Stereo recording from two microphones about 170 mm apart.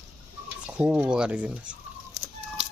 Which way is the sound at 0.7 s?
5° right (ahead or behind).